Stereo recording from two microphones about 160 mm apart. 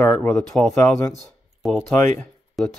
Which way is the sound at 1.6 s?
Centre (ahead or behind).